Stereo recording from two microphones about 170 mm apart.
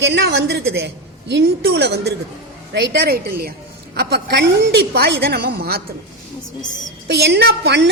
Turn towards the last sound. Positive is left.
turn(degrees=-80)